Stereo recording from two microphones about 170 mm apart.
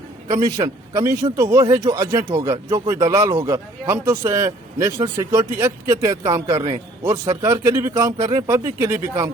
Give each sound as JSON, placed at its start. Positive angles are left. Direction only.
{"t": 0.4, "sound": "a man's voice", "side_deg": -20}